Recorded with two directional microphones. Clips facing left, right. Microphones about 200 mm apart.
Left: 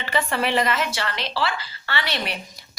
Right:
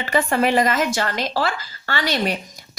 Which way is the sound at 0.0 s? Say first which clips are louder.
Right 5 dB; 45° right (ahead or behind).